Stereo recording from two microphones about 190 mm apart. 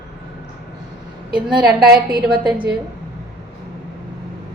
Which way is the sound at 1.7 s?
55° right (ahead or behind).